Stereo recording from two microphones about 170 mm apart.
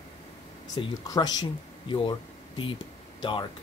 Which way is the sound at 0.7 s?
20° left (ahead or behind).